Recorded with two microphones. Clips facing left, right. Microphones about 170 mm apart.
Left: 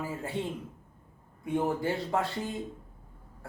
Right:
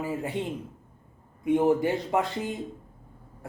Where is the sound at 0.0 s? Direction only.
15° right (ahead or behind).